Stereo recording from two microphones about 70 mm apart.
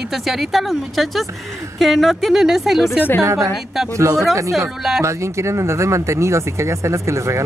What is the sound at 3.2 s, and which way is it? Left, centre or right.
Speech, right.